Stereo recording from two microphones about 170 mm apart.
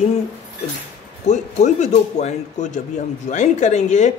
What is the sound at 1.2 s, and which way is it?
Speech, 45° left (ahead or behind).